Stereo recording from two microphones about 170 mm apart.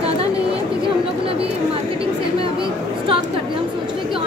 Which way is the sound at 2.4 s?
30° right (ahead or behind).